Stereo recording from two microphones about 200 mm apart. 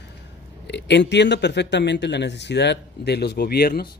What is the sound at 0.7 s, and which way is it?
Speech, 60° left (ahead or behind).